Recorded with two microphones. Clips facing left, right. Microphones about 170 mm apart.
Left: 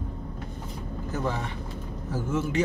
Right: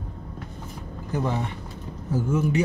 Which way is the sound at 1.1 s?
15° right (ahead or behind).